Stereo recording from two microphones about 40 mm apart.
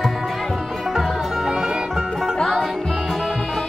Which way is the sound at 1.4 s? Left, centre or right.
Centre.